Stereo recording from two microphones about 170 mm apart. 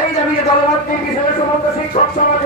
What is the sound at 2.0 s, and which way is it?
Music, 40° left (ahead or behind).